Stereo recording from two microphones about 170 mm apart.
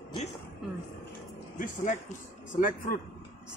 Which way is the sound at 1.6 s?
50° left (ahead or behind).